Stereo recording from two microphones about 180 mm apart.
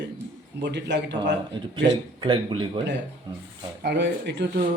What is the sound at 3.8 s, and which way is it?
Speech, 70° right (ahead or behind).